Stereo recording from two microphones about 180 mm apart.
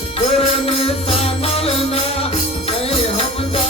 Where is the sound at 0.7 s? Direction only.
30° left (ahead or behind).